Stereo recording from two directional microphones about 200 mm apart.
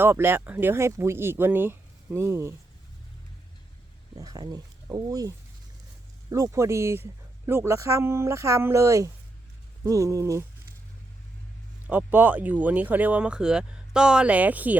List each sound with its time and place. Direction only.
0.0 s speech: 10° right (ahead or behind)
4.1 s speech: 20° right (ahead or behind)
6.3 s speech: 15° right (ahead or behind)
11.9 s speech: 10° right (ahead or behind)